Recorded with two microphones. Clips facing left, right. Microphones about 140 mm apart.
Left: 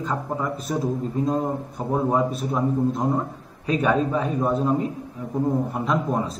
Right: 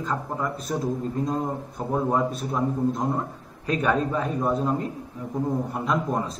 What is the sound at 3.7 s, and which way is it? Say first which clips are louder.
A man's voice: left 2 dB; 5° left (ahead or behind).